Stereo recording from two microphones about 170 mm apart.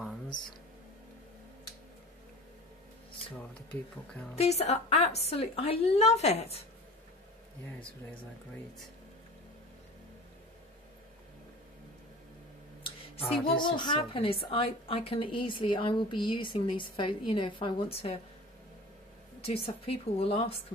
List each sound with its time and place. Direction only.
4.4 s a woman's voice: 40° left (ahead or behind)
7.8 s speech: 10° left (ahead or behind)
13.3 s a woman's voice: 25° left (ahead or behind)
19.4 s a woman's voice: 35° left (ahead or behind)